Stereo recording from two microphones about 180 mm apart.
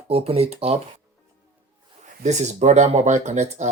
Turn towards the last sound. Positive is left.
turn(degrees=-40)  # may be behind; listen again after turning